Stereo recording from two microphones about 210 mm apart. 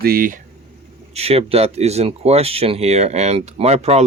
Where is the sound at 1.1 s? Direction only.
30° right (ahead or behind).